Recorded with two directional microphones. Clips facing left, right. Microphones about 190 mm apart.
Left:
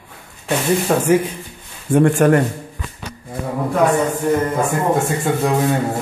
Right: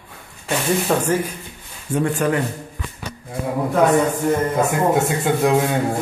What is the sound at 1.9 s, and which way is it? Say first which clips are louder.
Speech: left 7 dB; 55° left (ahead or behind).